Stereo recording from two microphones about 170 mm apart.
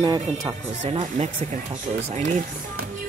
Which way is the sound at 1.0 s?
40° right (ahead or behind).